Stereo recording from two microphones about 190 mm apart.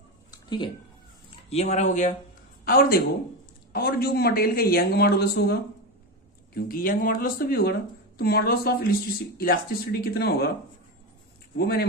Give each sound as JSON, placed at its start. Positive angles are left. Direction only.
{"t": 0.3, "sound": "a sound", "side_deg": 25}
{"t": 1.5, "sound": "speech", "side_deg": 35}
{"t": 2.6, "sound": "a man's voice", "side_deg": 50}
{"t": 11.5, "sound": "speech", "side_deg": 60}